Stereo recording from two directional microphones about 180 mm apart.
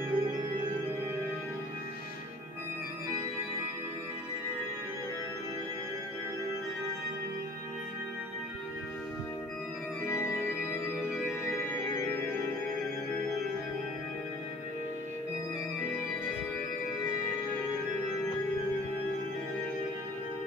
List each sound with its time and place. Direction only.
0.1 s music: 25° right (ahead or behind)
10.0 s organ: 15° left (ahead or behind)
11.4 s music: 15° left (ahead or behind)